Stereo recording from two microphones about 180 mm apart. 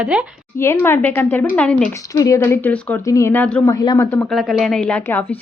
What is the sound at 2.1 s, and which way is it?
Speech, 15° left (ahead or behind).